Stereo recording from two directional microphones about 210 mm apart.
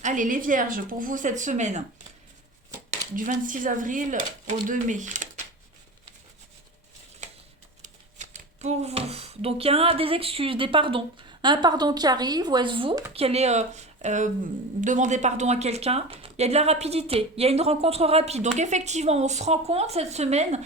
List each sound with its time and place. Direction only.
0.0 s speech: 35° right (ahead or behind)
3.2 s speech: 40° right (ahead or behind)
7.2 s a sound: 35° right (ahead or behind)
7.8 s speech: 35° right (ahead or behind)